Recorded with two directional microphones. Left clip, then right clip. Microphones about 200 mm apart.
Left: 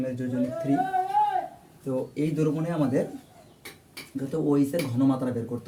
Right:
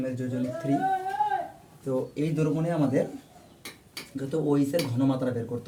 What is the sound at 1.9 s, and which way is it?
Speech, 15° left (ahead or behind).